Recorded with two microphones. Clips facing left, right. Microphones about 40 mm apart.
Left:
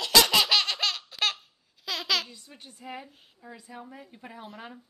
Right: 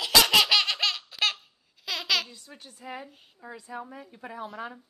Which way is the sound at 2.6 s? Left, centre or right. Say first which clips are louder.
Even; centre.